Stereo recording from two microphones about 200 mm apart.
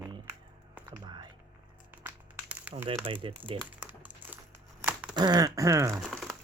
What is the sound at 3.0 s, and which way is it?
Speech, 25° right (ahead or behind).